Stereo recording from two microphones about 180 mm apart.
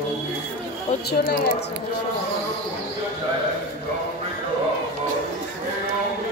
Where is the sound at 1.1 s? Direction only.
60° left (ahead or behind).